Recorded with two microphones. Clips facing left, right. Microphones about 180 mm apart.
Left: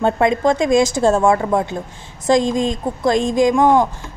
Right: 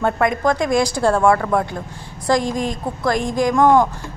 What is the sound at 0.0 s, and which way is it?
A woman's voice, 25° left (ahead or behind).